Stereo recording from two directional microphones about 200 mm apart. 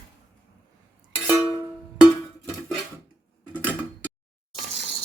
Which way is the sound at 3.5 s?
10° left (ahead or behind).